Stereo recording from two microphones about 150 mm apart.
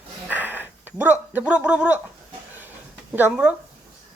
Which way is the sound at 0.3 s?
10° right (ahead or behind).